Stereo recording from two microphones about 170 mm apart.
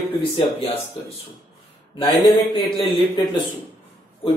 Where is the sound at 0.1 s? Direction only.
30° left (ahead or behind).